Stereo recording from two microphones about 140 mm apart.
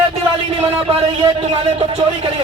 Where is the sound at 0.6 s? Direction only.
45° right (ahead or behind).